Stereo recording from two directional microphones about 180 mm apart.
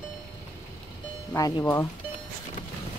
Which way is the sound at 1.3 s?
20° left (ahead or behind).